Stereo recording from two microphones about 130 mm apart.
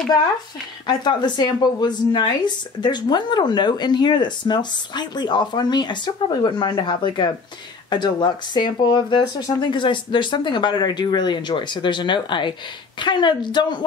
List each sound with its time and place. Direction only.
0.8 s a woman's voice: 35° left (ahead or behind)